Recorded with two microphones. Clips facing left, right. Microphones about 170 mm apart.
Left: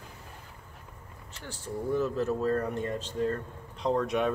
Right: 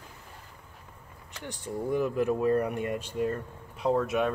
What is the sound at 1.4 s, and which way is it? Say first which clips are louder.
Speech: right 2 dB; 15° right (ahead or behind).